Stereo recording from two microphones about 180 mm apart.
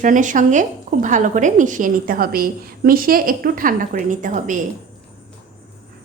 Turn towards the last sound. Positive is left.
turn(degrees=-45)  # may be behind; listen again after turning